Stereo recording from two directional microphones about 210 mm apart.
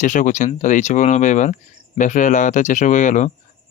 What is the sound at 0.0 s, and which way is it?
Speech, 35° left (ahead or behind).